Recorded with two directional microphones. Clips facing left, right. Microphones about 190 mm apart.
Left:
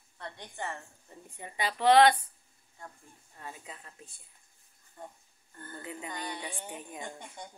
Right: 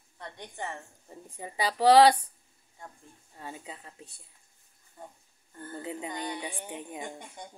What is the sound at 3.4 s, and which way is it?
Speech, 25° right (ahead or behind).